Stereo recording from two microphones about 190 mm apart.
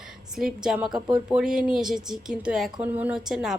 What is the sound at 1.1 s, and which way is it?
Speech, 5° right (ahead or behind).